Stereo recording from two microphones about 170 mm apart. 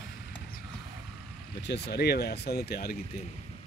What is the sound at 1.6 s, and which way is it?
Speech, 80° left.